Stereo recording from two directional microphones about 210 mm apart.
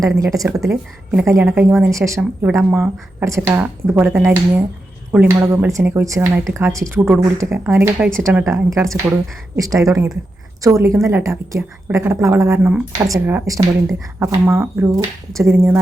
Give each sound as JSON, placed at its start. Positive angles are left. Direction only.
{"t": 0.2, "sound": "a woman's voice", "side_deg": -15}